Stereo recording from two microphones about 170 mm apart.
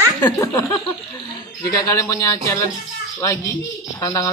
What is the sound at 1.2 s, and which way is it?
Speech, 20° left (ahead or behind).